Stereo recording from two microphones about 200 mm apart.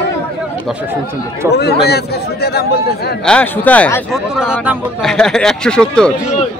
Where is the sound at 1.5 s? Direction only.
55° left (ahead or behind).